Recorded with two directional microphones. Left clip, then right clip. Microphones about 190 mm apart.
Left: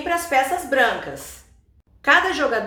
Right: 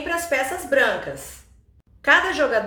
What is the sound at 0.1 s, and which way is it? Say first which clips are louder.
A woman's voice: left 4 dB; 5° left (ahead or behind).